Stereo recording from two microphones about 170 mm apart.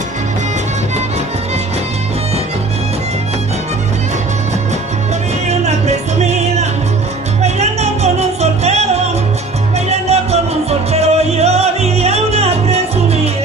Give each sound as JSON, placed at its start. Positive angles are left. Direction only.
{"t": 5.5, "sound": "music", "side_deg": -40}
{"t": 9.8, "sound": "music", "side_deg": -40}